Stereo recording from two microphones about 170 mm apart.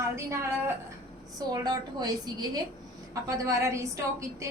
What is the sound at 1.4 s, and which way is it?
A woman's voice, 25° right (ahead or behind).